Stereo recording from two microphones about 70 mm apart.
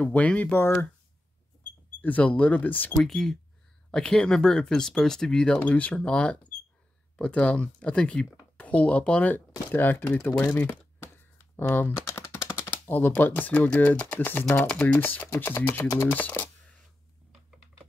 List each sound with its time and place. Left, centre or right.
0.0 s speech: centre
2.0 s speech: left
3.0 s speech: centre; by 9.4 s left
9.7 s speech: left
12.1 s typing: left
12.6 s speech: left
15.3 s music: left
16.1 s speech: left